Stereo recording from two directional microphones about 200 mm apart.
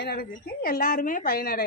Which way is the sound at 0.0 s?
50° left (ahead or behind).